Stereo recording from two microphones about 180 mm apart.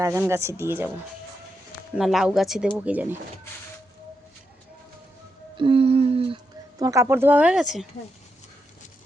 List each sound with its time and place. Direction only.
0.0 s speech: 15° right (ahead or behind)
2.0 s speech: centre (ahead or behind)
5.5 s a sound: 30° right (ahead or behind); by 7.9 s centre (ahead or behind)